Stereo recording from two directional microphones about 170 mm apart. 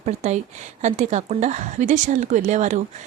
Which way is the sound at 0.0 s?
40° right (ahead or behind).